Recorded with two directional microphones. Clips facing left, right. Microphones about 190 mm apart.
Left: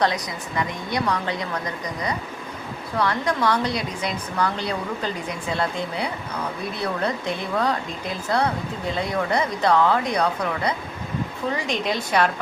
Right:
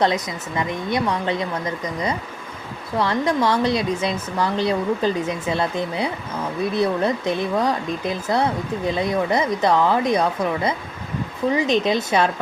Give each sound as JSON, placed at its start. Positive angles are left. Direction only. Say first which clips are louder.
{"t": 0.0, "sound": "speech", "louder": "right 3 dB", "side_deg": -20}